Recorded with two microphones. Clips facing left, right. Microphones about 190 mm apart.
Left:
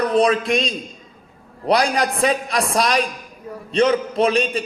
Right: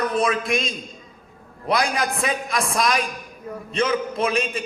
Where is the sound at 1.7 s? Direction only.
35° left (ahead or behind).